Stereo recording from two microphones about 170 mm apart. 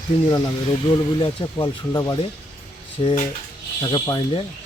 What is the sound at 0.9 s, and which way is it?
Speech, 30° left (ahead or behind).